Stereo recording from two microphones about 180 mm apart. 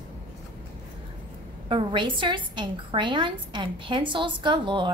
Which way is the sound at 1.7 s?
30° right (ahead or behind).